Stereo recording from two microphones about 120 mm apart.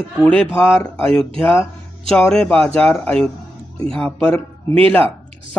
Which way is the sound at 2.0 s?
5° left (ahead or behind).